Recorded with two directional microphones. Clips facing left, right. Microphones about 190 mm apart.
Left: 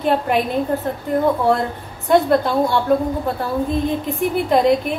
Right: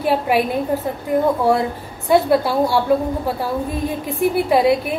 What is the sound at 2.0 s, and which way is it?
Speech, 5° right (ahead or behind).